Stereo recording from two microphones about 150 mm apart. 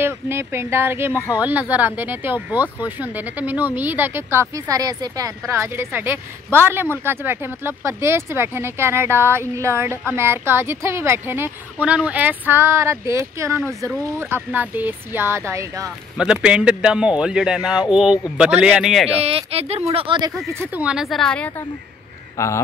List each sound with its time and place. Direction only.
0.0 s speech: 15° right (ahead or behind)
16.2 s a man's voice: 5° right (ahead or behind)
19.1 s speech: 40° right (ahead or behind)
20.5 s a man's voice: 15° right (ahead or behind); by 21.6 s 5° left (ahead or behind)
22.4 s speech: 20° left (ahead or behind)